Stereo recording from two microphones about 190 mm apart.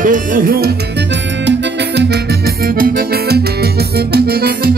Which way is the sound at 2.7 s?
55° right (ahead or behind).